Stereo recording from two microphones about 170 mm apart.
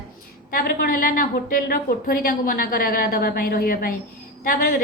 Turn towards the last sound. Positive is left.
turn(degrees=55)  # may be behind; listen again after turning